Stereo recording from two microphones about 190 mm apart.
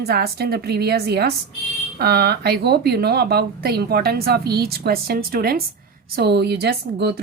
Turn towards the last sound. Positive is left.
turn(degrees=-60)  # may be behind; listen again after turning